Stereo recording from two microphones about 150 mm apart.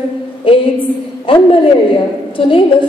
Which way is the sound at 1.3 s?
35° left (ahead or behind).